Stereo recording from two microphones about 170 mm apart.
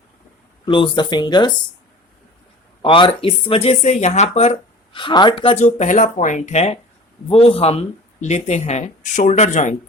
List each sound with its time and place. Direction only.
0.6 s speech: 25° left (ahead or behind)
2.8 s speech: 30° left (ahead or behind)